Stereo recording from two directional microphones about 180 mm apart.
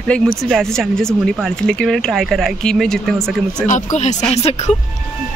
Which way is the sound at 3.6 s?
45° left (ahead or behind).